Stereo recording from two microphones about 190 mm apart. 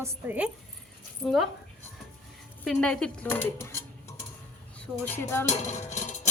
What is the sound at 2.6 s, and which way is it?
Dishes, 5° left (ahead or behind).